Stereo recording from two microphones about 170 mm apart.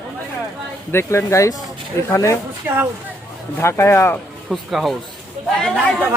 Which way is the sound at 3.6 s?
15° left (ahead or behind).